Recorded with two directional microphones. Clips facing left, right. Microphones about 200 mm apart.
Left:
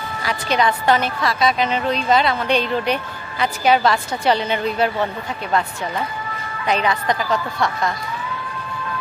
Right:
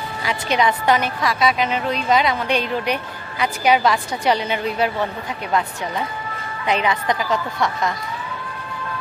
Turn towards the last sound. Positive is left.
turn(degrees=-20)  # may be behind; listen again after turning